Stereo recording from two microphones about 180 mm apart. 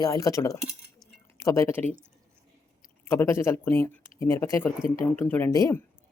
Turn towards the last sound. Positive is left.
turn(degrees=20)  # may be behind; listen again after turning